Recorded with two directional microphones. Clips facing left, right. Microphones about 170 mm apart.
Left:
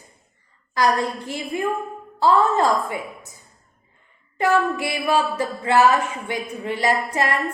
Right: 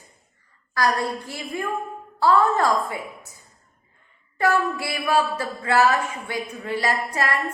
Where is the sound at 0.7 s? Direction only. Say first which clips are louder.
Left 3 dB; 20° left (ahead or behind).